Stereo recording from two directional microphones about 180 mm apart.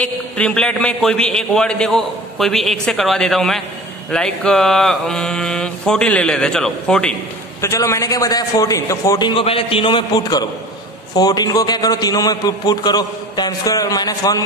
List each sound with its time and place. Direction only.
0.0 s a man's voice: 5° left (ahead or behind)
7.6 s a man's voice: 15° left (ahead or behind)